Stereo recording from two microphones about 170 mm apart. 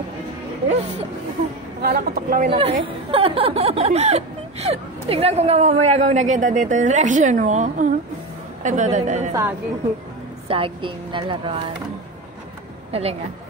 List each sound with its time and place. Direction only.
1.8 s a woman's voice: 60° right (ahead or behind)
2.5 s a man's voice: 30° right (ahead or behind)
9.3 s a woman's voice: 15° right (ahead or behind)
10.5 s speech: 30° right (ahead or behind)
12.9 s speech: 35° right (ahead or behind)